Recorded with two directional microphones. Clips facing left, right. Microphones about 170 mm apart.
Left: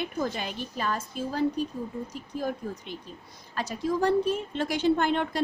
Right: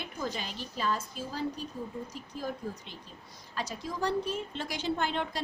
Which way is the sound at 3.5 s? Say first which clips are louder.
Left 8 dB; 55° left (ahead or behind).